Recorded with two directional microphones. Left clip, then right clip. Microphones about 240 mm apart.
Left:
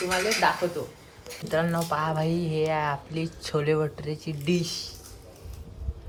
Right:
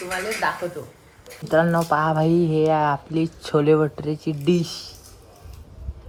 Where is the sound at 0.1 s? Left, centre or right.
Centre.